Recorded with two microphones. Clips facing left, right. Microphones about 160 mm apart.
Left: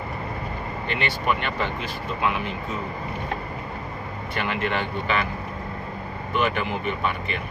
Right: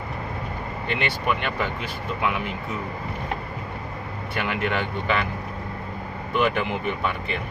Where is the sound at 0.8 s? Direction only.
15° right (ahead or behind).